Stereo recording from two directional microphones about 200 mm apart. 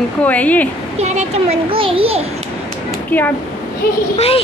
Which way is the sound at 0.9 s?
35° right (ahead or behind).